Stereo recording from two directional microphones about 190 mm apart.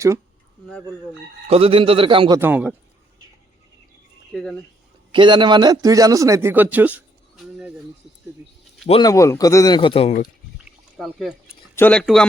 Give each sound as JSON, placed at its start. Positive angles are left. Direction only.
{"t": 1.5, "sound": "a man's voice", "side_deg": -30}
{"t": 2.4, "sound": "a man's voice", "side_deg": -10}
{"t": 4.3, "sound": "speech", "side_deg": 5}
{"t": 5.1, "sound": "a man's voice", "side_deg": -25}
{"t": 8.9, "sound": "a man's voice", "side_deg": 20}
{"t": 10.9, "sound": "speech", "side_deg": 0}
{"t": 11.7, "sound": "speech", "side_deg": 10}